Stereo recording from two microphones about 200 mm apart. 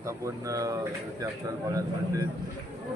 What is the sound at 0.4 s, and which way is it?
Speech, 15° right (ahead or behind).